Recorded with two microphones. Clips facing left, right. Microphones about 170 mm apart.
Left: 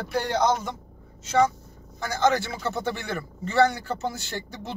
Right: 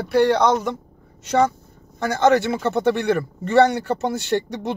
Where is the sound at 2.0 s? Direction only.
65° right (ahead or behind).